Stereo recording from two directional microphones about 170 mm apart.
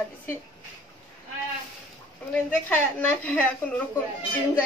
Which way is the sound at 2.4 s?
10° left (ahead or behind).